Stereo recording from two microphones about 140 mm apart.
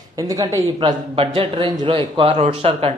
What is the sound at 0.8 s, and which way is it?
A man's voice, 35° right (ahead or behind).